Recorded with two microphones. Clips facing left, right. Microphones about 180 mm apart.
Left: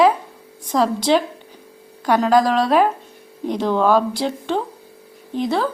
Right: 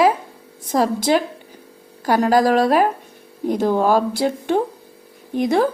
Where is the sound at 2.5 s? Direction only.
45° right (ahead or behind).